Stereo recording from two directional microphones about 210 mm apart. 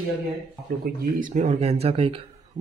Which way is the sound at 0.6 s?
45° right (ahead or behind).